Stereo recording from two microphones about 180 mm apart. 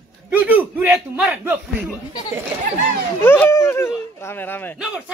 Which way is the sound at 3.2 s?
10° left (ahead or behind).